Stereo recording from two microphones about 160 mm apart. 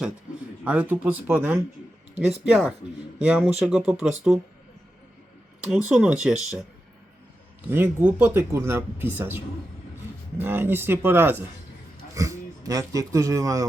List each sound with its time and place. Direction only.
0.6 s speech: 10° right (ahead or behind)
5.7 s speech: 5° right (ahead or behind)
7.7 s speech: 10° right (ahead or behind)